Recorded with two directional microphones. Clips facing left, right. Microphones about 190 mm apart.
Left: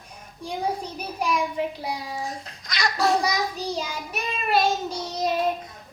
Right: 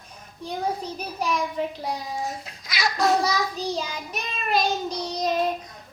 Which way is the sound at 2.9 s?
Centre (ahead or behind).